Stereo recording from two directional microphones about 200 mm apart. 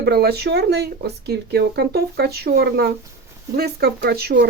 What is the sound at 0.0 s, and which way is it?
Speech, 55° right (ahead or behind).